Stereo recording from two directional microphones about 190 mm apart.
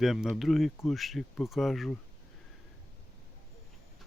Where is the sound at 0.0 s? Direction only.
Centre (ahead or behind).